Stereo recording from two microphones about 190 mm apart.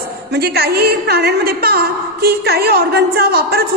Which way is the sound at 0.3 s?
55° right (ahead or behind).